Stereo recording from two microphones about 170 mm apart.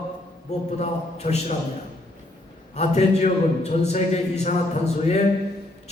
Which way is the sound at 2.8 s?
40° left (ahead or behind).